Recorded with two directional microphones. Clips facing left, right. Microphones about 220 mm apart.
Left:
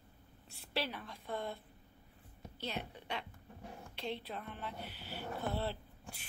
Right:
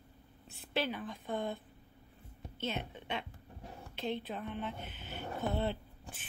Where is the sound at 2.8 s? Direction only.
20° right (ahead or behind).